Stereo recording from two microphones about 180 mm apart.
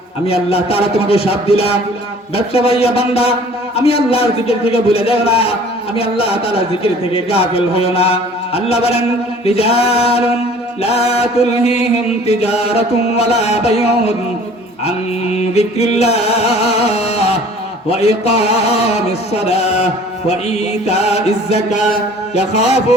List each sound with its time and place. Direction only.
0.3 s speech: 35° left (ahead or behind)